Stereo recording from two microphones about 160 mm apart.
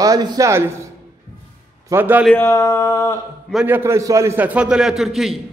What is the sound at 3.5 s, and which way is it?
A man's voice, 10° right (ahead or behind).